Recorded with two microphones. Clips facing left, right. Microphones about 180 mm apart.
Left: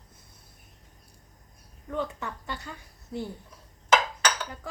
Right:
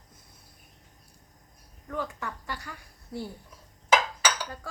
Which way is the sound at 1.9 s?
25° left (ahead or behind).